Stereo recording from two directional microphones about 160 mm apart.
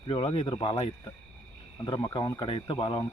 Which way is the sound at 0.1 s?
35° left (ahead or behind).